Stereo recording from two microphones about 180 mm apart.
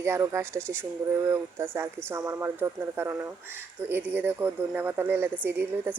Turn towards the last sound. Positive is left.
turn(degrees=-10)  # may be behind; listen again after turning